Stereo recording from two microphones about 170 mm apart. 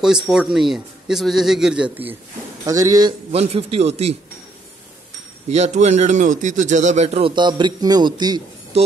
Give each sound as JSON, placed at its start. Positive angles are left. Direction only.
{"t": 0.0, "sound": "a man's voice", "side_deg": -5}
{"t": 2.6, "sound": "a man's voice", "side_deg": -20}
{"t": 3.3, "sound": "a man's voice", "side_deg": -40}
{"t": 5.5, "sound": "a man's voice", "side_deg": -40}